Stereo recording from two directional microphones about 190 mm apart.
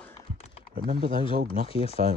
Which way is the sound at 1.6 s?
30° left (ahead or behind).